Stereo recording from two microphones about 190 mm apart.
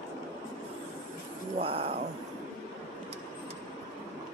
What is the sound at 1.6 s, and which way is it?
Speech, 30° right (ahead or behind).